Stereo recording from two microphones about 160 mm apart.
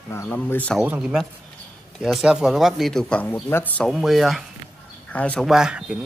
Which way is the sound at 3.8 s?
Centre (ahead or behind).